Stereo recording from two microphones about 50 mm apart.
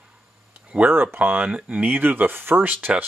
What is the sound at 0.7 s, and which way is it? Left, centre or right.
Speech, right.